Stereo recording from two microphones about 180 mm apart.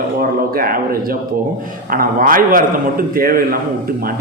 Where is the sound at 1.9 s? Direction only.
50° right (ahead or behind).